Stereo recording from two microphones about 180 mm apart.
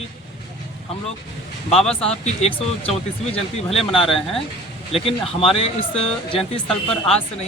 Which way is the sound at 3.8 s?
30° left (ahead or behind).